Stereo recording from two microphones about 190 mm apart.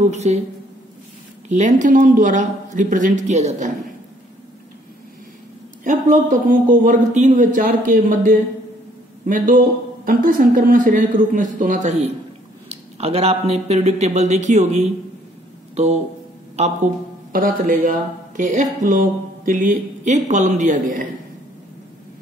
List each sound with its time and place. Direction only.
0.1 s speech: 35° right (ahead or behind)
1.5 s speech: 40° right (ahead or behind)
5.9 s speech: 40° right (ahead or behind)